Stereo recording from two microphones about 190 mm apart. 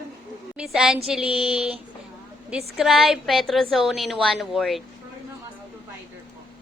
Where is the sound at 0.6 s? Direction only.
Centre (ahead or behind).